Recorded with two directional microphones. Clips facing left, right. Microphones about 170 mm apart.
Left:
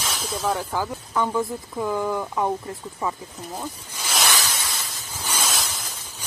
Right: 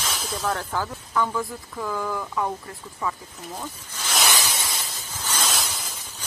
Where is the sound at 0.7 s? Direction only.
15° left (ahead or behind).